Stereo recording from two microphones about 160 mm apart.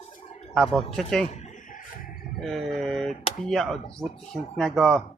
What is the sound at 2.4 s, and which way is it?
Speech, centre (ahead or behind).